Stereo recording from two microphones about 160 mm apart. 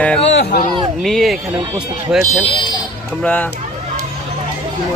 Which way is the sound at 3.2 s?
10° left (ahead or behind).